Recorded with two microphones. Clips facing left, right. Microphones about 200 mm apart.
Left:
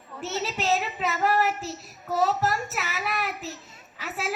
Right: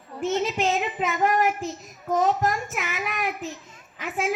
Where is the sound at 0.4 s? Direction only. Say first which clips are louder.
Right 2 dB; 40° left (ahead or behind).